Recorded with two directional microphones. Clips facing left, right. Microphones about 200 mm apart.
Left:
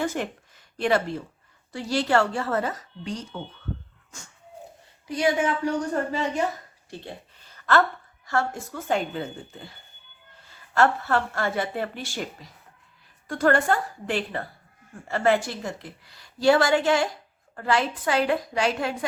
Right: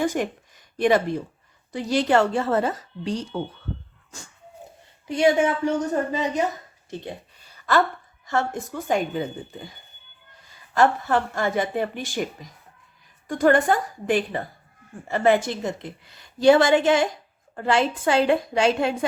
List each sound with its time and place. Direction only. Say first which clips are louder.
0.0 s a woman's voice: right 4 dB; 15° right (ahead or behind); by 3.2 s 30° right (ahead or behind)
5.0 s a woman's voice: right 4 dB; 25° right (ahead or behind)
7.0 s a sound: right 4 dB; 15° right (ahead or behind)
8.3 s a woman's voice: right 2 dB; 20° right (ahead or behind)